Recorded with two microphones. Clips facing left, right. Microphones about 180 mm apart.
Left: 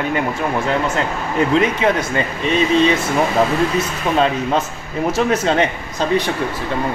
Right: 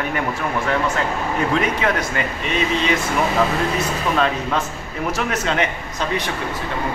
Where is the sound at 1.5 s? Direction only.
30° left (ahead or behind).